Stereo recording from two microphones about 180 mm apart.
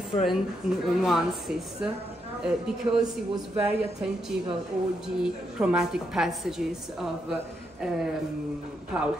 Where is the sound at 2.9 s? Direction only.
30° right (ahead or behind).